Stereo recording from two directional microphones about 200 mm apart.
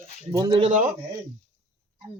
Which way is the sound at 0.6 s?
35° right (ahead or behind).